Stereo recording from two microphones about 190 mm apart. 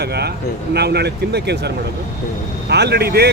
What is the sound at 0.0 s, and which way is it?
Speech, 60° right (ahead or behind).